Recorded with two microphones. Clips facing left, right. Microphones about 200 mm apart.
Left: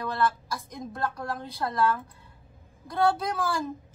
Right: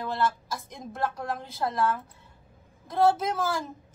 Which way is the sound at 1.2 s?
20° right (ahead or behind).